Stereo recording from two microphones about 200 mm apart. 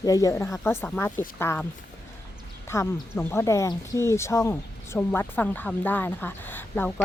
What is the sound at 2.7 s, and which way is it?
Speech, 15° left (ahead or behind).